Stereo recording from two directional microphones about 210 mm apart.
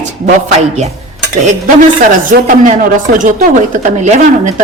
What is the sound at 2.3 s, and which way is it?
A woman's voice, 40° right (ahead or behind).